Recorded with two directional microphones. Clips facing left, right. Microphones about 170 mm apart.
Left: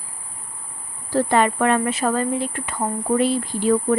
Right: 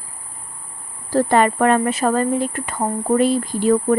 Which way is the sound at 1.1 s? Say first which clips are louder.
Right 3 dB; 45° right (ahead or behind).